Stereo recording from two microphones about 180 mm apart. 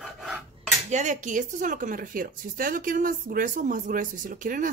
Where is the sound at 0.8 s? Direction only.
40° right (ahead or behind).